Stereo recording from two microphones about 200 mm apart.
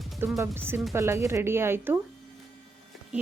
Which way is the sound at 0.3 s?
10° right (ahead or behind).